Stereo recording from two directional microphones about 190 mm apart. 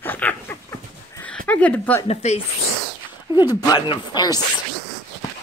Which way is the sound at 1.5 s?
10° left (ahead or behind).